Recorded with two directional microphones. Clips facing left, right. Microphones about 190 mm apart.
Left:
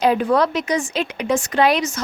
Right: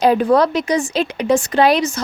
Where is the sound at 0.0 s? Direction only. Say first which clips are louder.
Right 3 dB; 35° right (ahead or behind).